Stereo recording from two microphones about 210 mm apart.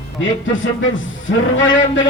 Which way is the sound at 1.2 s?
65° left (ahead or behind).